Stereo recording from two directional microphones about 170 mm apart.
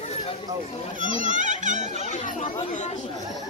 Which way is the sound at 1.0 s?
50° right (ahead or behind).